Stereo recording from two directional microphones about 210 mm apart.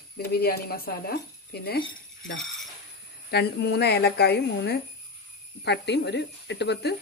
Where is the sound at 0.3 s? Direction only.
45° left (ahead or behind).